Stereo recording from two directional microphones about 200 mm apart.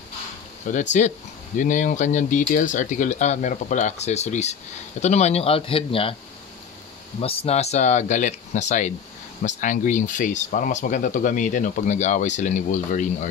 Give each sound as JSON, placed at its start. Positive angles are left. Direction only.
{"t": 0.7, "sound": "speech", "side_deg": 35}
{"t": 7.2, "sound": "speech", "side_deg": 30}